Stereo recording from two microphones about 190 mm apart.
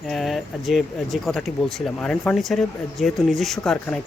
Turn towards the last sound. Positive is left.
turn(degrees=0)  # may be behind; listen again after turning